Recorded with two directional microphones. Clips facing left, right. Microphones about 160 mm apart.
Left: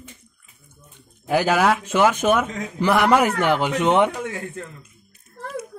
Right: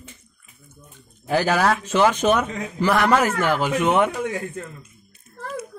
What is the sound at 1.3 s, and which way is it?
A man's voice, 10° left (ahead or behind).